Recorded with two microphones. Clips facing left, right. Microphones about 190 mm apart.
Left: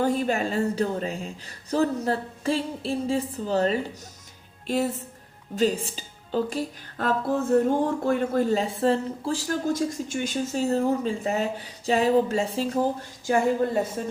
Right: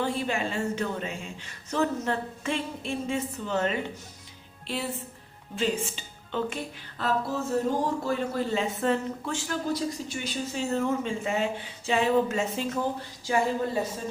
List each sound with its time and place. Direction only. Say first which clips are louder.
0.0 s a woman's voice: left 5 dB; 40° left (ahead or behind)
7.0 s speech: left 4 dB; 55° left (ahead or behind)